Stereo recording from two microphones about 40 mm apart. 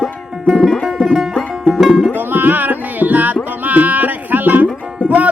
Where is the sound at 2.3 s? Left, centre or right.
Right.